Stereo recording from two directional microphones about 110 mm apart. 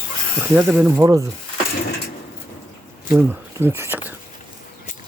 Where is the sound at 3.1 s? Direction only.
15° right (ahead or behind).